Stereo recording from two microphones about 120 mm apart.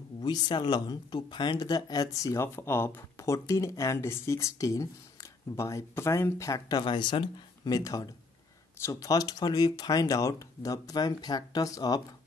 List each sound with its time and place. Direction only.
0.2 s speech: 35° left (ahead or behind)
6.8 s speech: 40° left (ahead or behind)